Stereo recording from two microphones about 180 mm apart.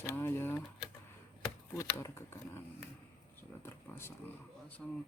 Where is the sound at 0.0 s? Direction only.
15° left (ahead or behind).